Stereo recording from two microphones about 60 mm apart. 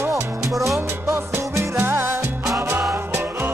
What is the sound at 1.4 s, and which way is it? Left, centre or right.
Music, right.